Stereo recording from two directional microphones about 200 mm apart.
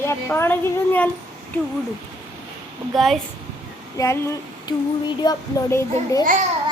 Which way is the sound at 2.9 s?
Centre (ahead or behind).